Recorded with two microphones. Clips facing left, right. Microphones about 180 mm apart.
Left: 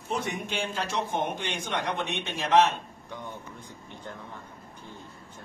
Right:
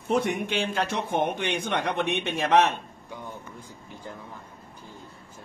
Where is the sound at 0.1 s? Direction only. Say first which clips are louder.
Right 6 dB; 60° right (ahead or behind).